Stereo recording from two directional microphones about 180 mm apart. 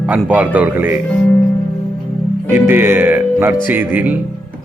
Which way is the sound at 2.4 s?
10° right (ahead or behind).